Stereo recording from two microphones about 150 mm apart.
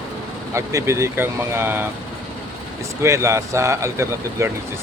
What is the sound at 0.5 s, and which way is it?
Speech, 20° right (ahead or behind).